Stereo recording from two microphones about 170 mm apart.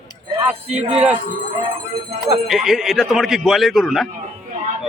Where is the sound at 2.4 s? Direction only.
Centre (ahead or behind).